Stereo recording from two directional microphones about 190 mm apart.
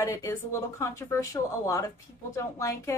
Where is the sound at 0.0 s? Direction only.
15° left (ahead or behind).